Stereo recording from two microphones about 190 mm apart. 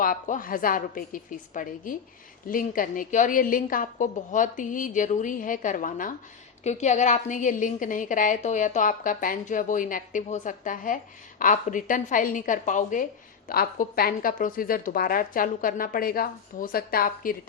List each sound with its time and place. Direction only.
0.0 s a woman's voice: 45° left (ahead or behind)